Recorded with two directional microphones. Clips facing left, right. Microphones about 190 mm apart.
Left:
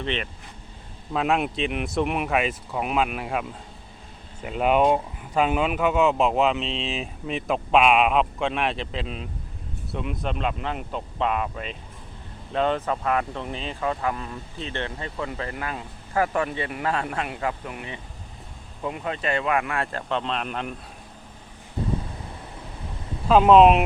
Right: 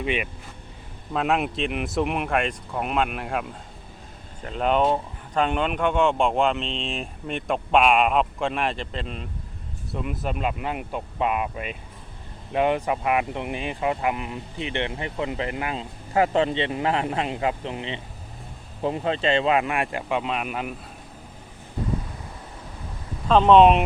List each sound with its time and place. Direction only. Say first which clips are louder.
0.0 s speech: right 2 dB; 10° right (ahead or behind)
1.1 s speech: even; centre (ahead or behind)
4.4 s speech: left 2 dB; 5° left (ahead or behind)
23.3 s speech: even; 5° left (ahead or behind)